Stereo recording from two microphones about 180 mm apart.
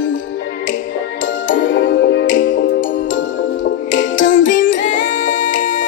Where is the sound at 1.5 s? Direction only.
90° left.